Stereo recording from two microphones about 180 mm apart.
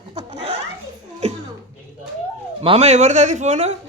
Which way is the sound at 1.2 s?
40° right (ahead or behind).